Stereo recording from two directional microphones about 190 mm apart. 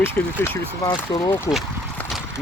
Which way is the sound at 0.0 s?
10° left (ahead or behind).